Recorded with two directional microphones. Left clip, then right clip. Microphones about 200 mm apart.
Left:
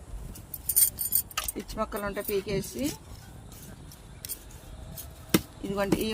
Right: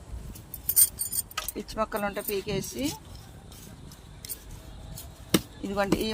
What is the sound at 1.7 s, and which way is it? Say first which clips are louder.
Speech: right 3 dB; 45° right (ahead or behind).